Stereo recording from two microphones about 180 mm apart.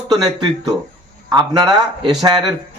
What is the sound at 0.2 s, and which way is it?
Speech, 20° right (ahead or behind).